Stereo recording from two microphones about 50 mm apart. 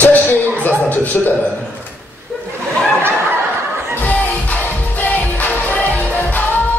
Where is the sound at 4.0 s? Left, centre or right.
Left.